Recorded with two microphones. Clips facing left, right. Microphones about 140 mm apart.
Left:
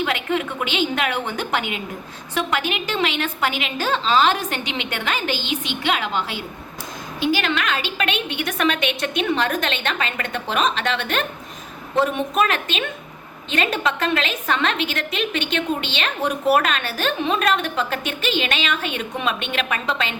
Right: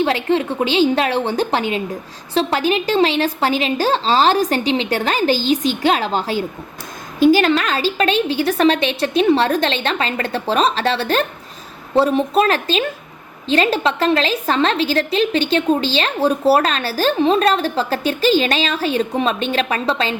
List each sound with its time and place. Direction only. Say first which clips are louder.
0.0 s a woman's voice: right 6 dB; 30° right (ahead or behind)